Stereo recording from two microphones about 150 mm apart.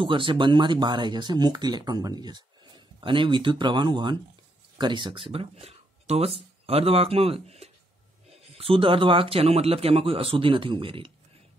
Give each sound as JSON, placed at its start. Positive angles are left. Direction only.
{"t": 0.0, "sound": "a man's voice", "side_deg": -35}